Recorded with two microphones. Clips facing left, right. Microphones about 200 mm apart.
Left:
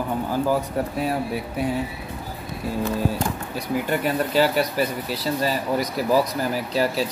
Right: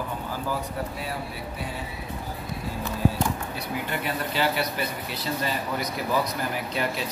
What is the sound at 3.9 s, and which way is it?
Speech, 40° left (ahead or behind).